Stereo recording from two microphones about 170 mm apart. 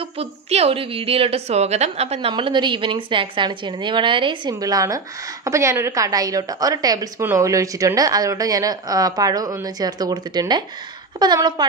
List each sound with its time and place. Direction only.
0.0 s a woman's voice: 35° right (ahead or behind)